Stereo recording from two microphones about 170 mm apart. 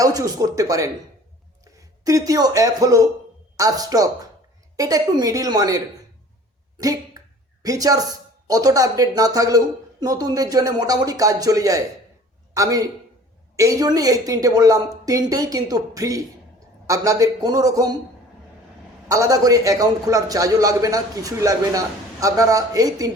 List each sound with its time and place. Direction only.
0.0 s a woman's voice: 20° right (ahead or behind)
6.7 s a sound: 20° right (ahead or behind)
7.6 s a woman's voice: 20° right (ahead or behind)
19.0 s a woman's voice: 20° right (ahead or behind)